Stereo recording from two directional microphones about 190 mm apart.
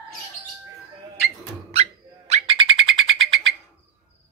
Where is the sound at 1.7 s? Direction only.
35° right (ahead or behind).